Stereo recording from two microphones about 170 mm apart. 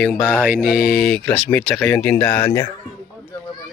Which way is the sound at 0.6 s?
60° left (ahead or behind).